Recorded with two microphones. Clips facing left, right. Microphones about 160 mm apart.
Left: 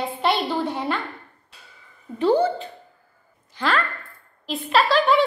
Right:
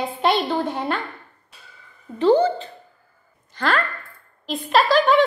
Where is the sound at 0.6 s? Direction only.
Centre (ahead or behind).